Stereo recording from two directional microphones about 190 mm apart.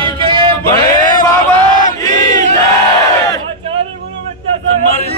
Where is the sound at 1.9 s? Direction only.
20° left (ahead or behind).